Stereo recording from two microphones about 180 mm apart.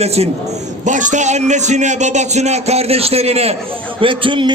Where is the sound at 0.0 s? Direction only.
35° right (ahead or behind).